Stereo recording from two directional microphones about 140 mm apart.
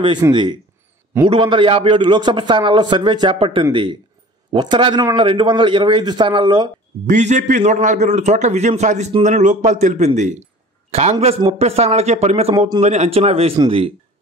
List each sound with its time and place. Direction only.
0.3 s a man's voice: 35° right (ahead or behind)
7.1 s a man's voice: 60° right (ahead or behind)
12.5 s speech: 30° right (ahead or behind)
12.8 s a man's voice: 55° right (ahead or behind)